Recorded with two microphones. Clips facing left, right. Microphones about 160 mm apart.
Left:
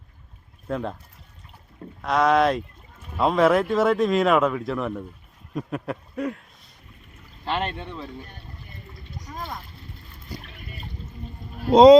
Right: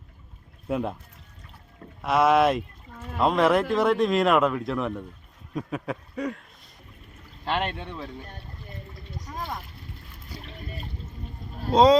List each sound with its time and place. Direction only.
0.7 s speech: 10° right (ahead or behind)
2.0 s speech: 5° right (ahead or behind)
7.4 s speech: 5° right (ahead or behind)
11.7 s speech: 20° left (ahead or behind)